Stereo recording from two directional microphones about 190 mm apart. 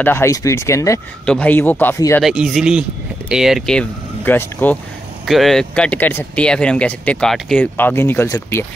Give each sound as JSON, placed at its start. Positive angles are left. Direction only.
{"t": 0.0, "sound": "speech", "side_deg": 15}
{"t": 2.2, "sound": "speech", "side_deg": 0}